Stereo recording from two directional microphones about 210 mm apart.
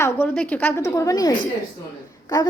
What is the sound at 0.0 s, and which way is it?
A woman's voice, 10° left (ahead or behind).